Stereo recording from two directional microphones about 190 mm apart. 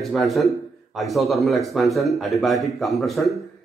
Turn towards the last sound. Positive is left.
turn(degrees=0)  # may be behind; listen again after turning